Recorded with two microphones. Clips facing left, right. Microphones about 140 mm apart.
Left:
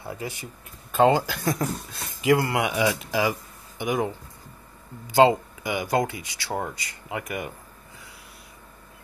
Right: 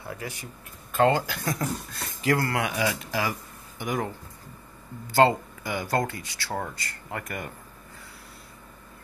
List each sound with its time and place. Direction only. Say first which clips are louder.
0.1 s speech: left 3 dB; 20° left (ahead or behind)